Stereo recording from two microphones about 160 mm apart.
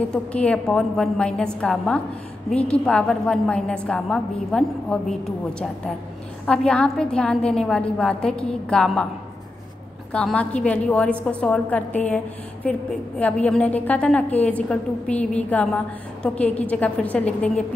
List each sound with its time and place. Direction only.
0.1 s a woman's voice: 5° left (ahead or behind)
10.1 s a woman's voice: 5° left (ahead or behind)